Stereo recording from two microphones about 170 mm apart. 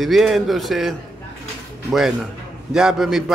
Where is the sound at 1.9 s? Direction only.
Centre (ahead or behind).